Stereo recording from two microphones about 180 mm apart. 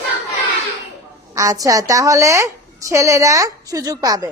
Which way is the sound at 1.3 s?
20° right (ahead or behind).